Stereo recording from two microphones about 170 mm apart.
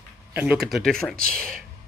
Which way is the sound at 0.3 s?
10° right (ahead or behind).